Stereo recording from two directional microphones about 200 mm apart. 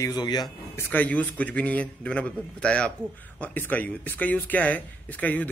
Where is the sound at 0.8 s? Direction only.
10° left (ahead or behind).